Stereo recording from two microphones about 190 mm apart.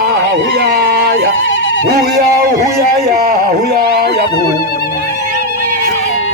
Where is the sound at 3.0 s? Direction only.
55° right (ahead or behind).